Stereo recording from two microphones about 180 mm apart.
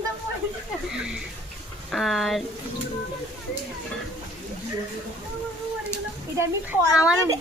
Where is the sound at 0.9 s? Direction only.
5° right (ahead or behind).